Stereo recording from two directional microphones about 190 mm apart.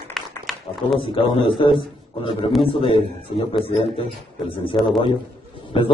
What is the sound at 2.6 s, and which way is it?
A man's voice, 30° left (ahead or behind).